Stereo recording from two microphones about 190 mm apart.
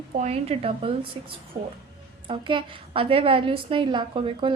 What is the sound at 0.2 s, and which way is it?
A woman's voice, 35° right (ahead or behind).